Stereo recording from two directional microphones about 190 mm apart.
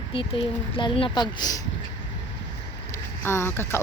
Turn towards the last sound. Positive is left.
turn(degrees=10)  # may be behind; listen again after turning